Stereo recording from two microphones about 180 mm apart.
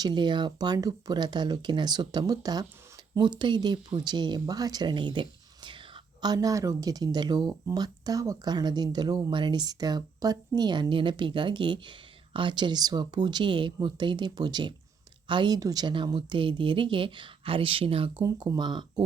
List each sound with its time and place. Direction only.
0.0 s speech: 25° right (ahead or behind)